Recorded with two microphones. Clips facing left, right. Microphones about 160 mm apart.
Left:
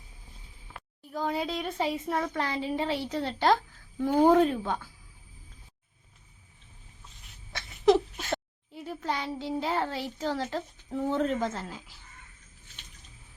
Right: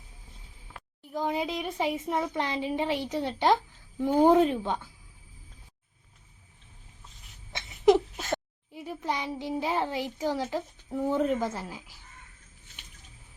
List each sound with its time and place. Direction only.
1.1 s speech: 15° right (ahead or behind)
7.5 s a sound: 20° right (ahead or behind)
8.7 s speech: 15° right (ahead or behind)